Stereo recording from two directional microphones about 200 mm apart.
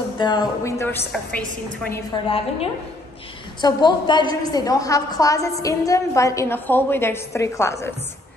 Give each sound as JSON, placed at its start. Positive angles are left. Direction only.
{"t": 0.2, "sound": "a woman's voice", "side_deg": 20}
{"t": 2.2, "sound": "a woman's voice", "side_deg": 30}